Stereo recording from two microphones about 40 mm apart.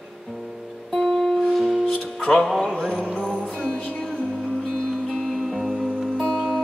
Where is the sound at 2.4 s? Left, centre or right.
Centre.